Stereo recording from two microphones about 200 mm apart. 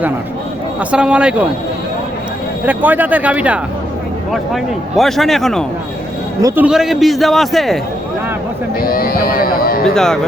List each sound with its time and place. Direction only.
0.8 s a man's voice: 5° right (ahead or behind)
2.6 s a man's voice: 10° right (ahead or behind)
8.8 s speech: 45° left (ahead or behind)
9.9 s a man's voice: 5° left (ahead or behind)